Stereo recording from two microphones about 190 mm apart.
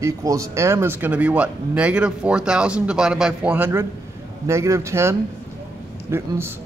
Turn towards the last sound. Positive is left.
turn(degrees=-15)  # may be behind; listen again after turning